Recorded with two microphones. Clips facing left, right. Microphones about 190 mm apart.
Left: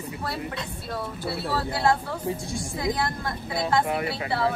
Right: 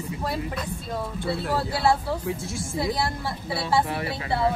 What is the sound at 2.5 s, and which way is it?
Music, 10° right (ahead or behind).